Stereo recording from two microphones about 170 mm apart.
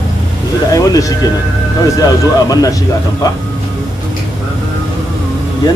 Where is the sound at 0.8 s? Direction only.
20° left (ahead or behind).